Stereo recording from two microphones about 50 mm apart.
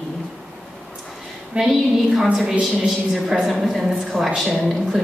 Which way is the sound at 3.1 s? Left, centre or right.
Centre.